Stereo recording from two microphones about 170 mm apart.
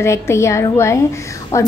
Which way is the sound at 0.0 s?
15° left (ahead or behind).